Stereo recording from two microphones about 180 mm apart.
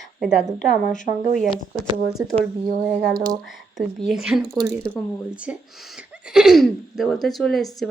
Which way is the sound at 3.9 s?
Centre (ahead or behind).